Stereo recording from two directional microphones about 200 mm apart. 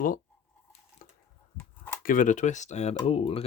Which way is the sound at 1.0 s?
45° left (ahead or behind).